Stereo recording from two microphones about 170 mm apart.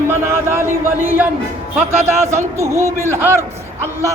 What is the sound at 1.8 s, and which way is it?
Speech, 40° right (ahead or behind).